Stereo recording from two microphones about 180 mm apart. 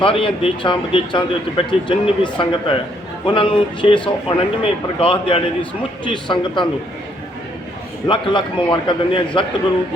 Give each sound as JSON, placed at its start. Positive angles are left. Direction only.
{"t": 0.0, "sound": "a man's voice", "side_deg": 30}
{"t": 8.0, "sound": "a man's voice", "side_deg": 25}